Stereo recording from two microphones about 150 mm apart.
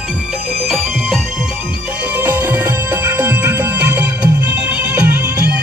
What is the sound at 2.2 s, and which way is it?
Music, 15° right (ahead or behind).